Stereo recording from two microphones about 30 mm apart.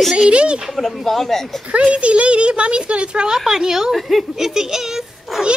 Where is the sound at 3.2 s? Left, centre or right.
Centre.